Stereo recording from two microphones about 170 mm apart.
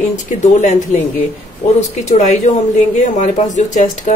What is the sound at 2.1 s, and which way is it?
Speech, 45° left (ahead or behind).